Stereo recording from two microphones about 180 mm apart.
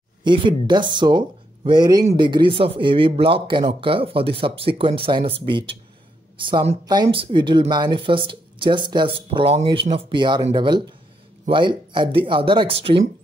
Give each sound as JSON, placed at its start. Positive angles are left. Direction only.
{"t": 0.2, "sound": "a woman's voice", "side_deg": -25}